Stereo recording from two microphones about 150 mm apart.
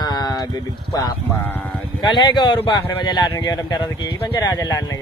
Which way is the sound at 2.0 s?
30° left (ahead or behind).